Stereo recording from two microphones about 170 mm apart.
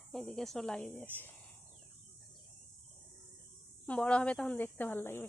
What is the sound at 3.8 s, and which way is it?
A woman's voice, 5° left (ahead or behind).